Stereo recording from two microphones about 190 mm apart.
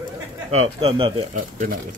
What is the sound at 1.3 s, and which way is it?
Speech, 45° right (ahead or behind).